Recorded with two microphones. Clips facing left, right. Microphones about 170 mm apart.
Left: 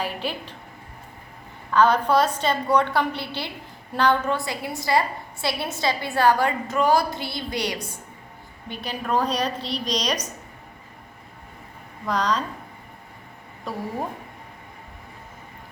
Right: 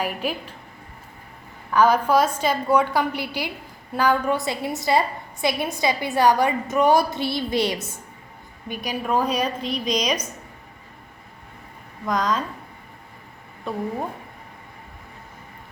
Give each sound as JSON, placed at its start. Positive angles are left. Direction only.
{"t": 0.0, "sound": "a woman's voice", "side_deg": -10}
{"t": 1.7, "sound": "a woman's voice", "side_deg": -10}
{"t": 3.1, "sound": "a woman's voice", "side_deg": 25}
{"t": 3.9, "sound": "a woman's voice", "side_deg": -10}
{"t": 4.4, "sound": "a woman's voice", "side_deg": -20}
{"t": 8.7, "sound": "a woman's voice", "side_deg": -10}
{"t": 9.6, "sound": "a woman's voice", "side_deg": 30}
{"t": 9.8, "sound": "a woman's voice", "side_deg": -10}
{"t": 12.0, "sound": "speech", "side_deg": 0}